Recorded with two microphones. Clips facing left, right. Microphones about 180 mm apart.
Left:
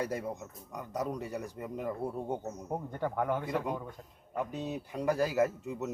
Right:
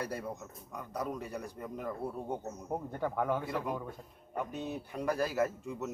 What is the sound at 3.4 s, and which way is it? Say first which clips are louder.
Speech: left 2 dB; 20° left (ahead or behind).